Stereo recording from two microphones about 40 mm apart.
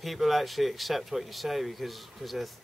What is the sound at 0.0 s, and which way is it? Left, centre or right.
Speech, centre.